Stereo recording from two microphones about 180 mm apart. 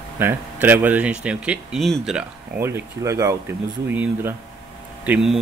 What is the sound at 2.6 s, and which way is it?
Speech, 15° right (ahead or behind).